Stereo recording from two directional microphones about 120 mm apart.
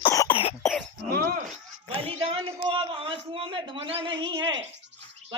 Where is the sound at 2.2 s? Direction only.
50° right (ahead or behind).